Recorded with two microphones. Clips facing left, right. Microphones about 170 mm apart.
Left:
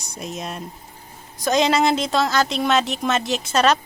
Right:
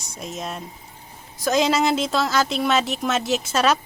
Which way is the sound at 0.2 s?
Centre (ahead or behind).